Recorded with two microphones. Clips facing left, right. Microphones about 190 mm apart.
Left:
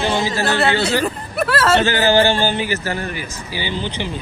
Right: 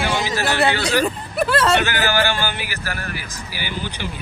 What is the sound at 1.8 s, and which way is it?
A man's voice, 15° left (ahead or behind).